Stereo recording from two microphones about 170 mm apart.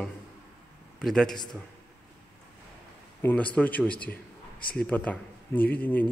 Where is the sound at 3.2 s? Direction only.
10° left (ahead or behind).